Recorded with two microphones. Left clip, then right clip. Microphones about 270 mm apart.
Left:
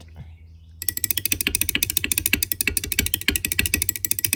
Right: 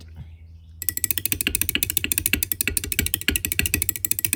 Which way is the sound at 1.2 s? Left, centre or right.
Centre.